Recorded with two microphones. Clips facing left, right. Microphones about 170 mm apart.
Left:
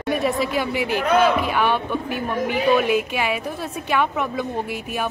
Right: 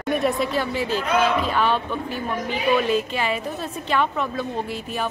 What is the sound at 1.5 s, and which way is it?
Speech, 10° left (ahead or behind).